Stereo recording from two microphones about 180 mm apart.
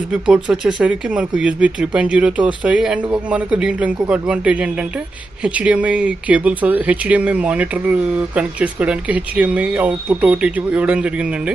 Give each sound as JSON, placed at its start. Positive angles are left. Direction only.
{"t": 0.1, "sound": "speech", "side_deg": -5}